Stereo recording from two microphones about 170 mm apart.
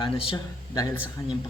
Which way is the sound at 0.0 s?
35° left (ahead or behind).